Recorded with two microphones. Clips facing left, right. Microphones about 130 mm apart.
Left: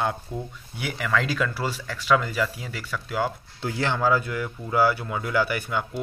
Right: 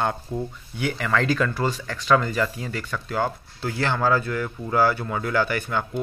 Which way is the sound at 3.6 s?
20° left (ahead or behind).